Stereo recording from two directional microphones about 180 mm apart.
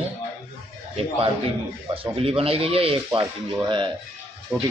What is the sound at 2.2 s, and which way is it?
A man's voice, 30° right (ahead or behind).